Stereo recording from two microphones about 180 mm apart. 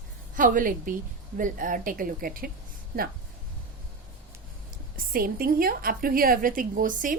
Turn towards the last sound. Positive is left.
turn(degrees=-45)  # may be behind; listen again after turning